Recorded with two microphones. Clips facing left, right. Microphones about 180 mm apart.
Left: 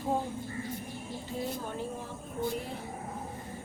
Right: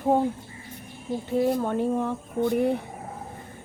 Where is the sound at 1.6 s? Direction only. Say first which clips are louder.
Right 12 dB; 65° right (ahead or behind).